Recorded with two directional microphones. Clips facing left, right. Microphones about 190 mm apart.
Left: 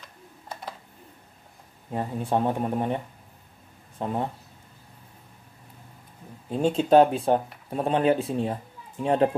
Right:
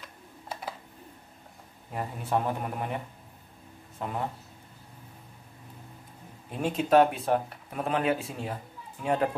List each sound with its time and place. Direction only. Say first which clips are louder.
0.5 s computer keyboard: even; 5° right (ahead or behind)
1.9 s speech: left 4 dB; 30° left (ahead or behind)
4.0 s speech: left 4 dB; 30° left (ahead or behind)
6.5 s a child's voice: left 4 dB; 30° left (ahead or behind)